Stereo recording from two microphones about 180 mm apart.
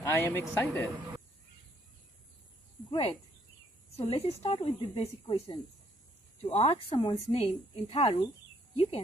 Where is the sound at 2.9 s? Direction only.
30° left (ahead or behind).